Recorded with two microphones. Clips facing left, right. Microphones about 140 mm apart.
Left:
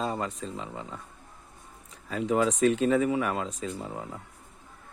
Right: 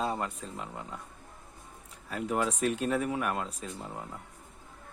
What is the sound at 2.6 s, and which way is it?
Speech, 90° left.